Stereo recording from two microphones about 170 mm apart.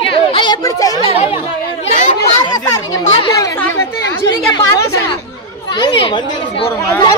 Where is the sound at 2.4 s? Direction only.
25° left (ahead or behind).